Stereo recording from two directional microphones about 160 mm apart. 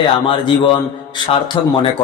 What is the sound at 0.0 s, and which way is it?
A man's voice, 30° left (ahead or behind).